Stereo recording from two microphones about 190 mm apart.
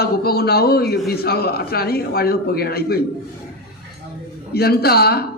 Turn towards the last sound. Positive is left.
turn(degrees=55)  # may be behind; listen again after turning